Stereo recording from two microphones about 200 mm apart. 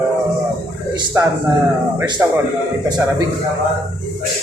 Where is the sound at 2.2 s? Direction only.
10° right (ahead or behind).